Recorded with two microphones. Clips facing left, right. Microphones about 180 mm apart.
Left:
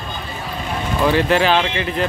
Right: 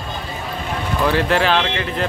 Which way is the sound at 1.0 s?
5° left (ahead or behind).